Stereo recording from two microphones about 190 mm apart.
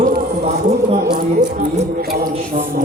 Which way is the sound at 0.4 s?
30° right (ahead or behind).